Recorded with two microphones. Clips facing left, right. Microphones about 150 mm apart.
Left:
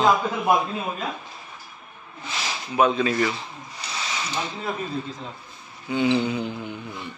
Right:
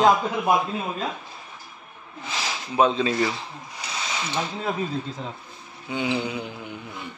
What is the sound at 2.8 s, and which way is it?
Speech, 25° right (ahead or behind).